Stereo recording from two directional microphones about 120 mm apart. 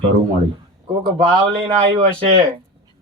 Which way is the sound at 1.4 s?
55° right (ahead or behind).